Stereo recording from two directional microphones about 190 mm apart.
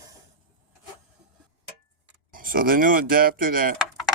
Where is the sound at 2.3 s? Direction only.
50° right (ahead or behind).